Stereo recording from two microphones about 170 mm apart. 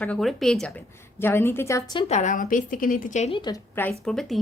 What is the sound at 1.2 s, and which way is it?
Speech, 15° left (ahead or behind).